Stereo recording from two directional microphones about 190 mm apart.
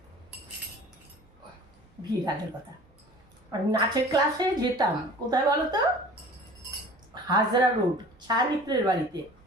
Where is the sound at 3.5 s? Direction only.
20° right (ahead or behind).